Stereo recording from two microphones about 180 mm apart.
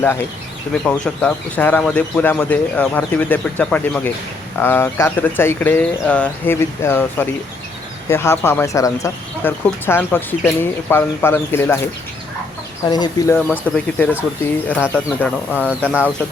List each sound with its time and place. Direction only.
0.0 s speech: 15° left (ahead or behind)
12.9 s speech: 20° left (ahead or behind)
13.3 s speech: 10° left (ahead or behind)